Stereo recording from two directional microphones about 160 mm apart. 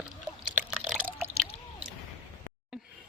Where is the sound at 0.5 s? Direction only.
10° right (ahead or behind).